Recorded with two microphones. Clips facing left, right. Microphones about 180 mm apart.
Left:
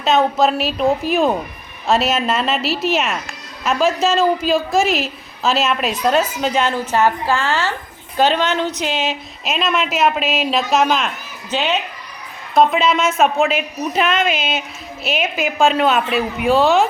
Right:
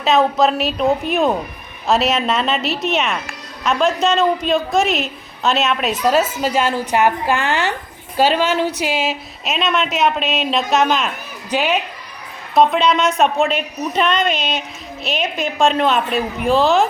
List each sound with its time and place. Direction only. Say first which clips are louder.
0.0 s a woman's voice: even; centre (ahead or behind)
11.5 s a woman's voice: right 2 dB; 10° right (ahead or behind)
12.5 s a woman's voice: even; centre (ahead or behind)